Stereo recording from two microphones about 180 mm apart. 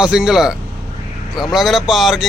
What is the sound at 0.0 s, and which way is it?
Speech, 5° right (ahead or behind).